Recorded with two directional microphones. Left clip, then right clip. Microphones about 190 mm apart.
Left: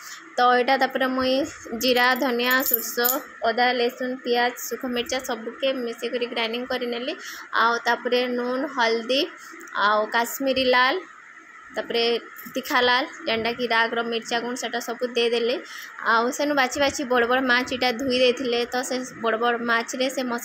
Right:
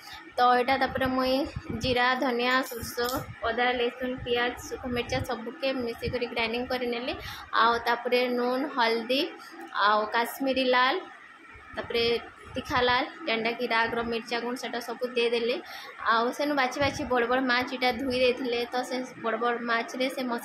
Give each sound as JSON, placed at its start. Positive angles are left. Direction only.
{"t": 0.4, "sound": "a woman's voice", "side_deg": 20}
{"t": 4.6, "sound": "a woman's voice", "side_deg": 20}